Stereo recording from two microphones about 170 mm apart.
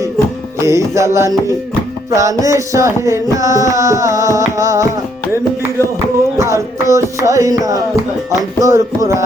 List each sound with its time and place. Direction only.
0.6 s music: 15° right (ahead or behind)
6.3 s music: 15° right (ahead or behind)